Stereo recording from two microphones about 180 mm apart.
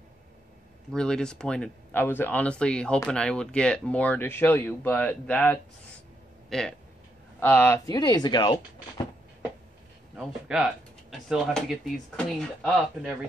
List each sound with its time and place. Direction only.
0.9 s speech: 5° left (ahead or behind); by 9.0 s 25° left (ahead or behind)
10.1 s speech: 5° right (ahead or behind)